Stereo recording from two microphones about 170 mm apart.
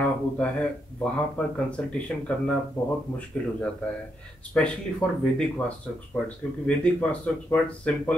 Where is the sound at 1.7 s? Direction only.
5° left (ahead or behind).